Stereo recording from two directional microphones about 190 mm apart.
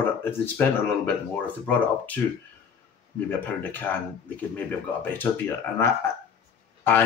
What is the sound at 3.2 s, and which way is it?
Speech, 10° left (ahead or behind).